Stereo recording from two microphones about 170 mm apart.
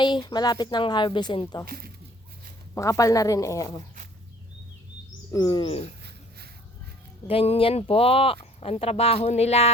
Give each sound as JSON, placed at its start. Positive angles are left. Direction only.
{"t": 0.0, "sound": "a woman's voice", "side_deg": 25}
{"t": 1.6, "sound": "speech", "side_deg": -60}
{"t": 2.7, "sound": "a woman's voice", "side_deg": 20}
{"t": 5.3, "sound": "a woman's voice", "side_deg": 25}
{"t": 7.3, "sound": "speech", "side_deg": 35}